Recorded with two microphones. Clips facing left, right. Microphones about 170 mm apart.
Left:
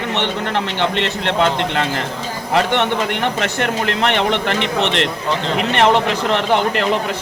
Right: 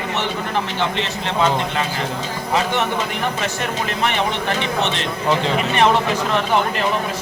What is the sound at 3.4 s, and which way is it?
Speech, 65° left (ahead or behind).